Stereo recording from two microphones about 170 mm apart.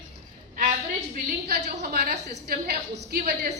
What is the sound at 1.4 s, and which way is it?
A woman's voice, 70° right (ahead or behind).